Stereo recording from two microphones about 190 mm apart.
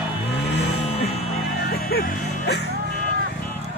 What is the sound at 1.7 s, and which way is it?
Music, 55° left (ahead or behind).